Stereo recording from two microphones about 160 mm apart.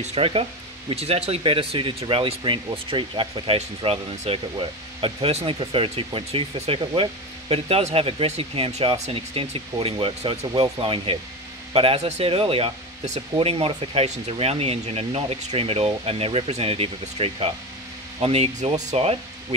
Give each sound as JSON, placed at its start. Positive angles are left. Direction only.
{"t": 0.0, "sound": "speech", "side_deg": -40}